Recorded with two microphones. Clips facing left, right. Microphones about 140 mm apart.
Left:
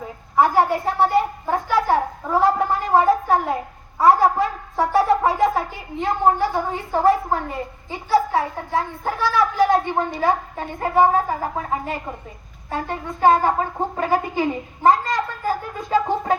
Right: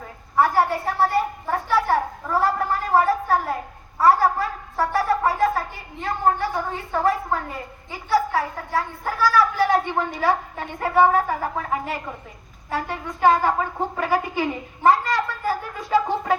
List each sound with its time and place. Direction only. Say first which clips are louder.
0.0 s a woman's voice: left 2 dB; 15° left (ahead or behind)